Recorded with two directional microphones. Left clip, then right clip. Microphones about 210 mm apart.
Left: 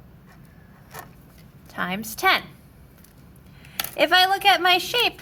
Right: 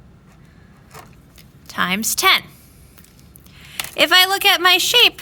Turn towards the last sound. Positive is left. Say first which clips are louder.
# right 7 dB
turn(degrees=-50)  # may be behind; listen again after turning